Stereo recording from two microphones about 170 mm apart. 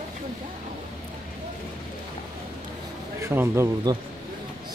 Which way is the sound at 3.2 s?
15° right (ahead or behind).